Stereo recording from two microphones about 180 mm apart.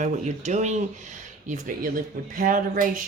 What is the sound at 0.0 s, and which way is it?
Speech, 40° right (ahead or behind).